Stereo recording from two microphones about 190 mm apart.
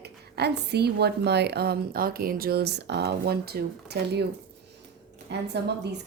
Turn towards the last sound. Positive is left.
turn(degrees=-60)  # may be behind; listen again after turning